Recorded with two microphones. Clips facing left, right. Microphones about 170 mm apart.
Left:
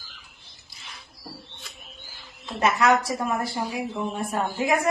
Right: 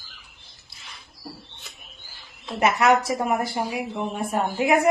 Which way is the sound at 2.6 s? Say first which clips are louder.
Right 2 dB; 25° right (ahead or behind).